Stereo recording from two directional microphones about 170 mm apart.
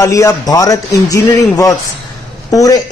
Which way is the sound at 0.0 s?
20° left (ahead or behind).